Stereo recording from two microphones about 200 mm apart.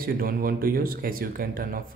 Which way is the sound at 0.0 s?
45° right (ahead or behind).